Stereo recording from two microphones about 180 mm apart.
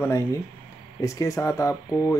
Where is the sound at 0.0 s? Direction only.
15° left (ahead or behind).